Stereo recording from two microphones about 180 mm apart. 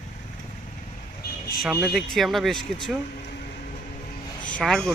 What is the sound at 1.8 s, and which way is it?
Speech, centre (ahead or behind).